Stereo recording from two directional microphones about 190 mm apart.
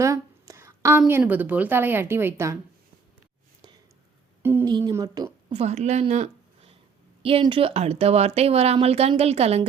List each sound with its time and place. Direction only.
0.0 s a woman's voice: 15° right (ahead or behind)
4.4 s a woman's voice: 10° right (ahead or behind); by 9.6 s 35° right (ahead or behind)